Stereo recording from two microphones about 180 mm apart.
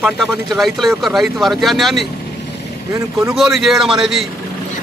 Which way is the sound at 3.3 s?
Centre (ahead or behind).